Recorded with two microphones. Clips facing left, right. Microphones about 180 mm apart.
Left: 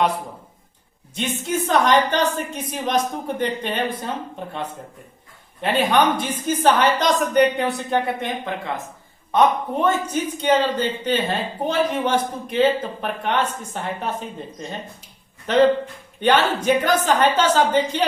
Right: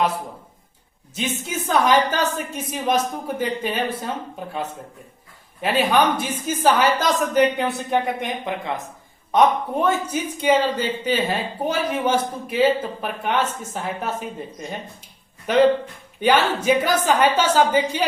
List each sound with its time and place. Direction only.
1.1 s a woman's voice: centre (ahead or behind)
5.5 s a woman's voice: 5° right (ahead or behind)
8.0 s speech: 15° right (ahead or behind)
15.5 s speech: 10° right (ahead or behind)